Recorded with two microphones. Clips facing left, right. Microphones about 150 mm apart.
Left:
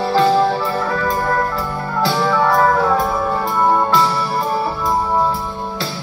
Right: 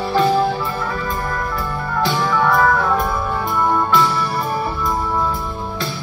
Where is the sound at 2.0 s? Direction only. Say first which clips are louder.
Left 2 dB; 35° left (ahead or behind).